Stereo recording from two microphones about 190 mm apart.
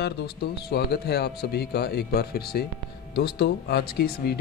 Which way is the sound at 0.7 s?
60° left (ahead or behind).